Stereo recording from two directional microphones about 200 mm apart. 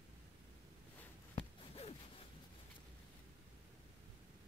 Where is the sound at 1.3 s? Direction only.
30° left (ahead or behind).